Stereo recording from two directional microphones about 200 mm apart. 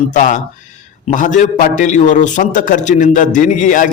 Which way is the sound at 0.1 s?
40° left (ahead or behind).